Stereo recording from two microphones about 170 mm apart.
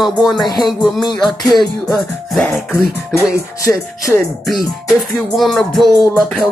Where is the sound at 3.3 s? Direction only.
60° right (ahead or behind).